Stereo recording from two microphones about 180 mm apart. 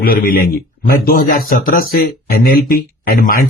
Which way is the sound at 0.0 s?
55° left (ahead or behind).